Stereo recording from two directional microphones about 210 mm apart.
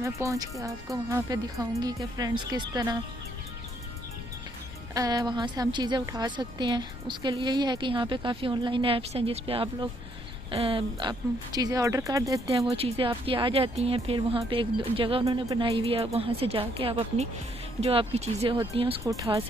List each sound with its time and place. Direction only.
0.0 s speech: 15° right (ahead or behind)
4.9 s a woman's voice: 20° right (ahead or behind)
12.7 s a woman's voice: 25° right (ahead or behind)